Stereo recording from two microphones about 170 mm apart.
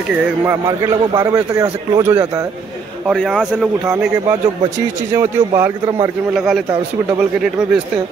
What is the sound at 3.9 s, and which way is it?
A man's voice, 15° right (ahead or behind).